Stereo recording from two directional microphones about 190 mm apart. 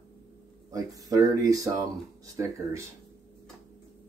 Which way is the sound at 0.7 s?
20° right (ahead or behind).